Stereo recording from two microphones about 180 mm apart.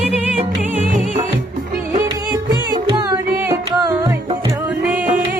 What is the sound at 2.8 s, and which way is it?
Music, 25° right (ahead or behind).